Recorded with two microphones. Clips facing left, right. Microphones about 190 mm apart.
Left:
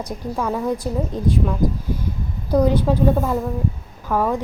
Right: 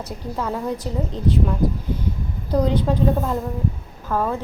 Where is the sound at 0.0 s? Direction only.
10° left (ahead or behind).